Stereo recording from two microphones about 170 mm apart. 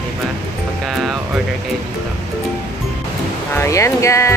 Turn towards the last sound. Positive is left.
turn(degrees=15)  # may be behind; listen again after turning